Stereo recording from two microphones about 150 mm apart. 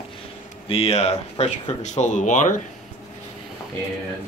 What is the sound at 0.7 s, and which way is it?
Speech, 45° left (ahead or behind).